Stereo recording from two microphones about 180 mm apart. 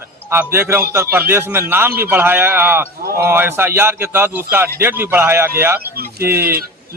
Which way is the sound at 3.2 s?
15° right (ahead or behind).